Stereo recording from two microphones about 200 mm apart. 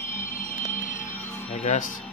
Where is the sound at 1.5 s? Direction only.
40° left (ahead or behind).